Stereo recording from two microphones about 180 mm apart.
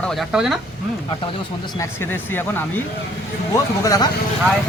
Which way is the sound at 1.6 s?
20° left (ahead or behind).